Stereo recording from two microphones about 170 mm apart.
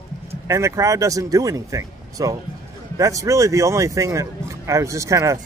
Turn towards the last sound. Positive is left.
turn(degrees=-20)  # may be behind; listen again after turning